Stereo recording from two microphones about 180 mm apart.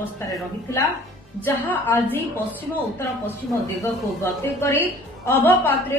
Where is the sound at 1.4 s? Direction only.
10° left (ahead or behind).